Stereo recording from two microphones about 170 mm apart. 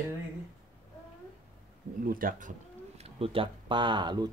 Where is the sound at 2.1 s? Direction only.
55° right (ahead or behind).